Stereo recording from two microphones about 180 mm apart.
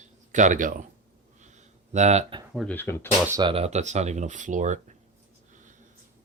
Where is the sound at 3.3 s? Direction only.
25° right (ahead or behind); by 4.9 s 45° right (ahead or behind).